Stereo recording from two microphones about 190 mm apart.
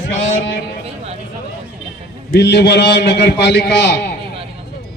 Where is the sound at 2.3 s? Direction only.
60° left (ahead or behind).